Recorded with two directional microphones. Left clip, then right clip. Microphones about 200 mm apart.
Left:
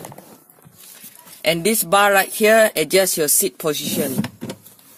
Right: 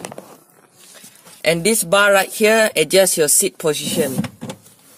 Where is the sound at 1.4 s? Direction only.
15° right (ahead or behind).